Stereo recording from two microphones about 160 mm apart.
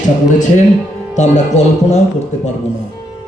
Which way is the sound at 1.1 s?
45° left (ahead or behind).